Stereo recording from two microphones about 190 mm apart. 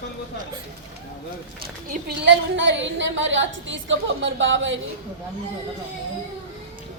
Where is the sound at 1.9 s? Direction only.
60° right (ahead or behind); by 4.8 s 80° right.